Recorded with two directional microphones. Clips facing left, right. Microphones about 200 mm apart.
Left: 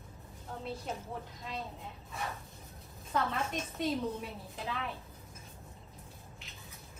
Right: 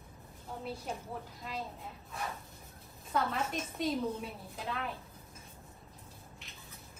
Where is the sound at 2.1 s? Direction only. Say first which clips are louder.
Even; centre (ahead or behind).